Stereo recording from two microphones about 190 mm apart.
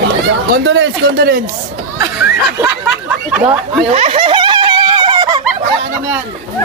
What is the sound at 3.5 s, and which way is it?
Snicker, 30° right (ahead or behind).